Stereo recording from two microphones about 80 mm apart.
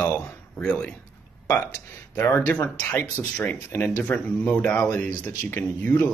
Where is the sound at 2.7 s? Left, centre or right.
Left.